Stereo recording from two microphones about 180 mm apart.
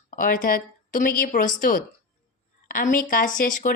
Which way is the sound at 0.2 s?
50° left (ahead or behind).